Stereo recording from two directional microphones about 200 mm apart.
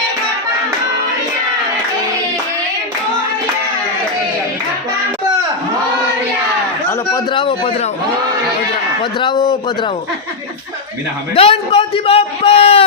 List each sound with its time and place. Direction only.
7.1 s a sound: 25° left (ahead or behind)
9.1 s a man's voice: 20° left (ahead or behind)
11.3 s a man's voice: 30° left (ahead or behind)